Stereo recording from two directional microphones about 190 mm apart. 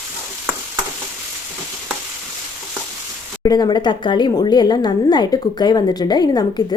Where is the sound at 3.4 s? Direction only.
20° left (ahead or behind).